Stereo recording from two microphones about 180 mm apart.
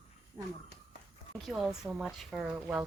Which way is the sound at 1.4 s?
Centre (ahead or behind).